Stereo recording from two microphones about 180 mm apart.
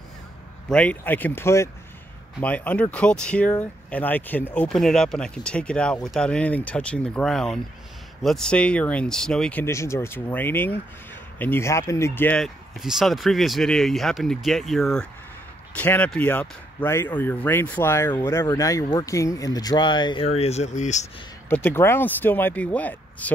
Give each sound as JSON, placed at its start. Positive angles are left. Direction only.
{"t": 0.7, "sound": "speech", "side_deg": 5}
{"t": 12.8, "sound": "speech", "side_deg": 0}
{"t": 20.3, "sound": "speech", "side_deg": 35}
{"t": 21.6, "sound": "speech", "side_deg": 15}